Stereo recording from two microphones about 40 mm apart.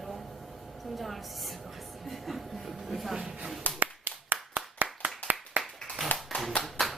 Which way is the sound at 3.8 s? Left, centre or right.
Right.